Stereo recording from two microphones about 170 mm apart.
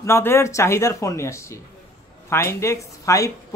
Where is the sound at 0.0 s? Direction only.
15° left (ahead or behind).